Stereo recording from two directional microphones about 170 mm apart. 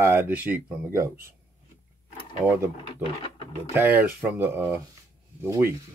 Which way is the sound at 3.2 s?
35° left (ahead or behind).